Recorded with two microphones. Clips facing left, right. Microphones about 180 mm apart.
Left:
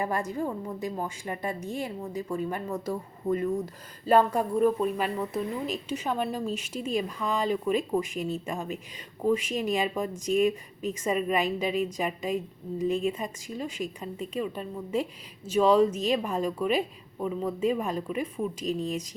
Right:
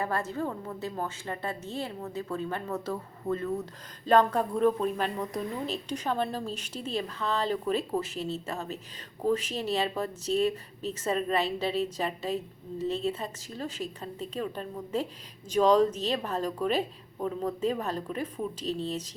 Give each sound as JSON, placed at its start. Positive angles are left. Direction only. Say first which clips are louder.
{"t": 0.0, "sound": "a woman's voice", "louder": "left 2 dB", "side_deg": 15}